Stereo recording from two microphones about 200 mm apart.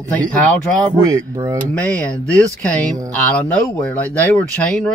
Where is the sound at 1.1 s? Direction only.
15° right (ahead or behind).